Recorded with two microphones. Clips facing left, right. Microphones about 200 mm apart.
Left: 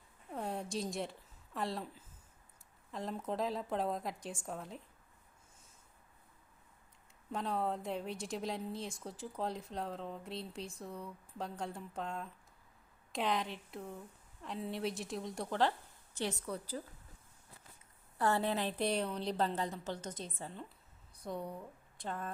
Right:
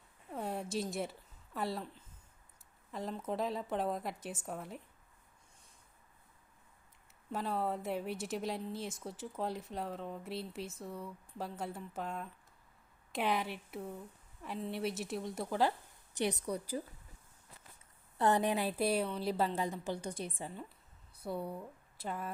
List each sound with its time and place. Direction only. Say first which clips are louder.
0.3 s a sound: right 1 dB; centre (ahead or behind)
1.5 s a woman's voice: right 1 dB; centre (ahead or behind)
7.3 s a woman's voice: even; 5° right (ahead or behind)
18.2 s a woman's voice: right 2 dB; 15° right (ahead or behind)